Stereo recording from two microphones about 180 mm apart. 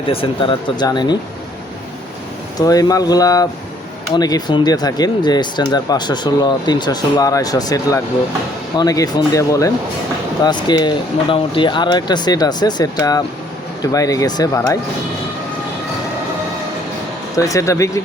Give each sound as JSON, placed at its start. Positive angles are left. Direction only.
{"t": 0.1, "sound": "speech", "side_deg": 30}
{"t": 2.6, "sound": "speech", "side_deg": 20}
{"t": 17.3, "sound": "speech", "side_deg": 20}